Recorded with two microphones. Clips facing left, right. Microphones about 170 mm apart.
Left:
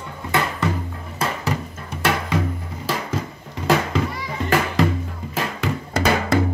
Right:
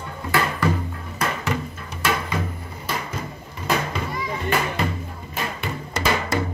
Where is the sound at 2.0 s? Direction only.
65° left (ahead or behind).